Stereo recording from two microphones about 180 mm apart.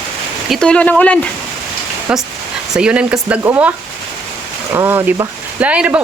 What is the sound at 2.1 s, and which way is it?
Speech, 5° right (ahead or behind).